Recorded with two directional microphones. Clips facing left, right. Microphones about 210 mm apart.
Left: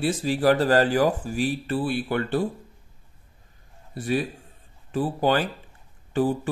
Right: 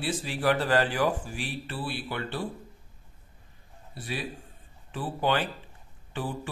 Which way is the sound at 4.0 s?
50° left (ahead or behind).